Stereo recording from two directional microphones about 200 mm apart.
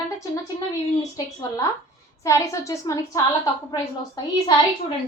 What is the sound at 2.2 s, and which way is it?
A woman's voice, 15° left (ahead or behind).